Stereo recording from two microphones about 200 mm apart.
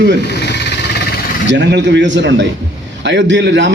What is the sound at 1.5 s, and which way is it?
A man's voice, 60° right (ahead or behind).